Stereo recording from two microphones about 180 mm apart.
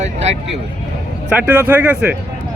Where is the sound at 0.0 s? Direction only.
40° right (ahead or behind).